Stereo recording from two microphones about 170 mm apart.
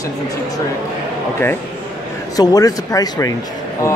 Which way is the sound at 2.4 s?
20° left (ahead or behind).